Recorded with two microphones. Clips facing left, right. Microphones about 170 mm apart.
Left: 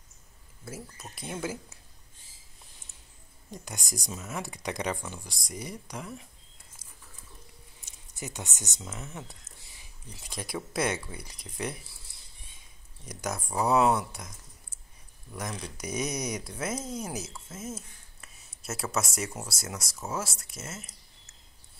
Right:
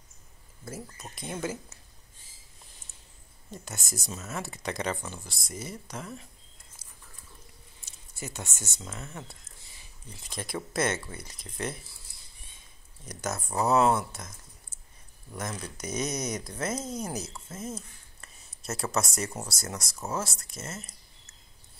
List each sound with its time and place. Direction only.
0.7 s speech: 5° left (ahead or behind)
3.5 s speech: 15° left (ahead or behind)
6.8 s a sound: 15° left (ahead or behind)
7.8 s speech: 15° left (ahead or behind)
10.1 s speech: 10° left (ahead or behind)
13.0 s speech: 10° left (ahead or behind)
15.8 s speech: 10° left (ahead or behind)